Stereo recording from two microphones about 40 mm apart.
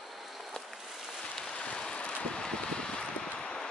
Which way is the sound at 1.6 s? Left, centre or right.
Left.